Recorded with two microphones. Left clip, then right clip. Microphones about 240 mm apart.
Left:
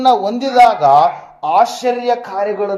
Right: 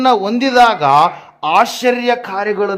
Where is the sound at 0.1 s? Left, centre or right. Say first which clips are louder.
Right 1 dB; right.